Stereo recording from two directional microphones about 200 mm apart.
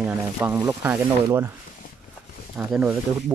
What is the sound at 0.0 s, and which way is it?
Speech, 10° right (ahead or behind).